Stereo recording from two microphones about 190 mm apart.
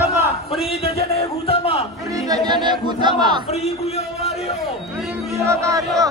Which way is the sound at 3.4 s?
35° left (ahead or behind).